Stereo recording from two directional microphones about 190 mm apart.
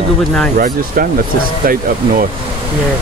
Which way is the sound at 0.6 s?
50° right (ahead or behind).